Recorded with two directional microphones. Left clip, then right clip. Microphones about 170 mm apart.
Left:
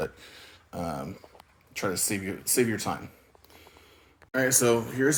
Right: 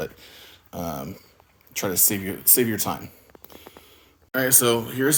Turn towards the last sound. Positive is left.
turn(degrees=-10)  # may be behind; listen again after turning